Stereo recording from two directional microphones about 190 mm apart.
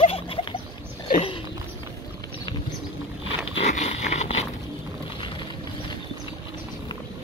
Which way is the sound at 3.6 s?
35° left (ahead or behind).